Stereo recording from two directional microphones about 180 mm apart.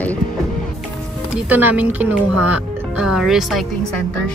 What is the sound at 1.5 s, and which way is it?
Speech, 10° right (ahead or behind).